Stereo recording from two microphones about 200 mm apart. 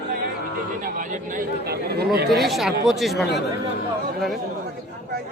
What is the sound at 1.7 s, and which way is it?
Speech, 50° right (ahead or behind).